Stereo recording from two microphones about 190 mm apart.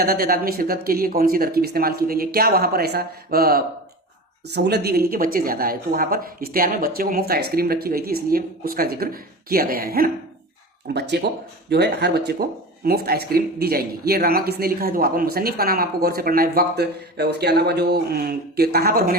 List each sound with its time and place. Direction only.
0.0 s speech: 50° right (ahead or behind)
10.8 s speech: 60° right (ahead or behind)